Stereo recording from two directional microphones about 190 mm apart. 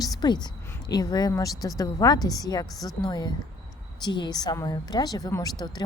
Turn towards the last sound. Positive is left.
turn(degrees=20)  # may be behind; listen again after turning